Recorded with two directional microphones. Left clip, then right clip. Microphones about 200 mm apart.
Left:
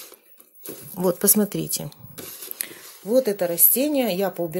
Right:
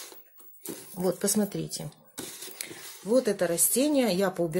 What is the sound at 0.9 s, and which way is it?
Speech, 30° left (ahead or behind).